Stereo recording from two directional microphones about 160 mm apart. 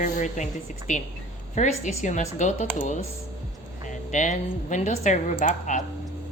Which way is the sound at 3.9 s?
50° left (ahead or behind).